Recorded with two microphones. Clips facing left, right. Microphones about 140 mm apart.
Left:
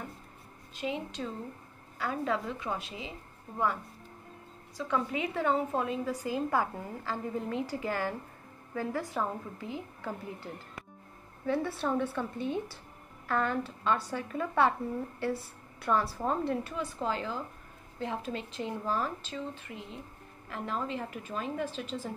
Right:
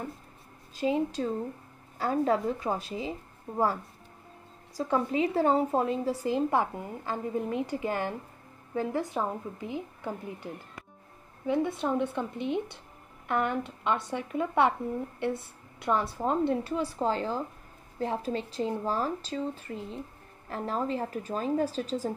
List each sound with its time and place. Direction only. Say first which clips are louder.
0.7 s speech: right 8 dB; 35° right (ahead or behind)
4.7 s a woman's voice: right 5 dB; 35° right (ahead or behind)